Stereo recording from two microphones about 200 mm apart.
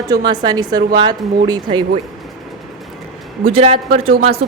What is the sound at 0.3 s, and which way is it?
A woman's voice, 20° right (ahead or behind).